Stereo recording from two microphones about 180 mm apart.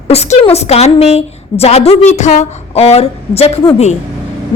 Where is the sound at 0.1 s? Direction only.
35° left (ahead or behind).